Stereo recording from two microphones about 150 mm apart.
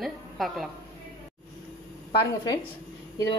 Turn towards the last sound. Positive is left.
turn(degrees=25)  # may be behind; listen again after turning